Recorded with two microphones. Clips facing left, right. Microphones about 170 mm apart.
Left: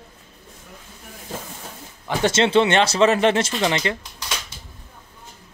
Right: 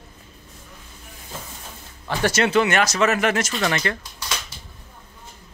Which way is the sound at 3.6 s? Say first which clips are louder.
Left 2 dB; 20° left (ahead or behind).